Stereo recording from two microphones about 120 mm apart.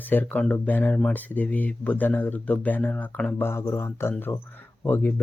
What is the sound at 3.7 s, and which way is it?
Speech, 25° left (ahead or behind).